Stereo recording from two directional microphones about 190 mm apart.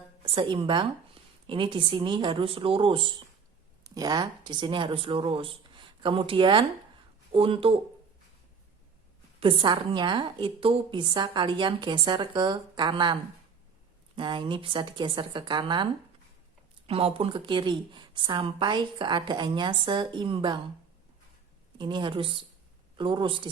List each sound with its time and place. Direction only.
0.3 s a woman's voice: 25° right (ahead or behind)
9.4 s a woman's voice: 25° right (ahead or behind)
14.2 s a woman's voice: 25° right (ahead or behind)
21.8 s a woman's voice: 25° right (ahead or behind)